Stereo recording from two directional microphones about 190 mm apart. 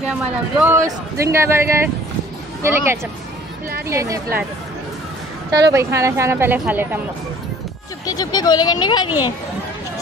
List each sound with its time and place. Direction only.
0.0 s a man's voice: 5° right (ahead or behind)
5.5 s a man's voice: 20° right (ahead or behind)
8.0 s speech: 20° left (ahead or behind)